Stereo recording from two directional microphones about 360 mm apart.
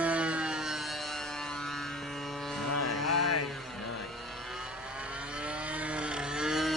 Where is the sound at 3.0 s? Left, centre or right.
Left.